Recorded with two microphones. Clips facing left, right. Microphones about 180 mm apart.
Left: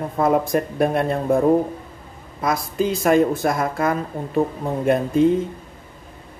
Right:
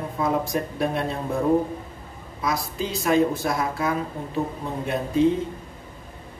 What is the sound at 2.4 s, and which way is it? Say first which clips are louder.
Music: left 6 dB; 50° left (ahead or behind).